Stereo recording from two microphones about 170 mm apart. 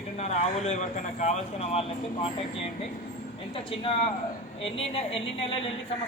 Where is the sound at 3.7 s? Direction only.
30° left (ahead or behind).